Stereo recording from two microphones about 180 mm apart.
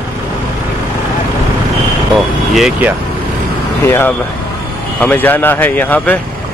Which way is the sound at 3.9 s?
15° left (ahead or behind).